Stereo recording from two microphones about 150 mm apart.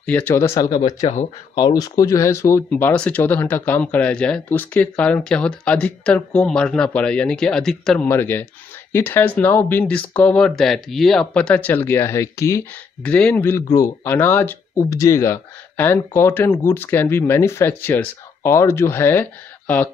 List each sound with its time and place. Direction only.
0.0 s speech: 10° left (ahead or behind)
8.1 s speech: 15° left (ahead or behind)